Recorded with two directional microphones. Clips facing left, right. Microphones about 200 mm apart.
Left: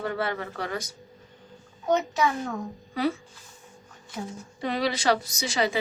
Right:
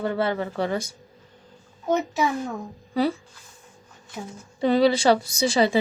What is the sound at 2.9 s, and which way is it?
Speech, 30° right (ahead or behind).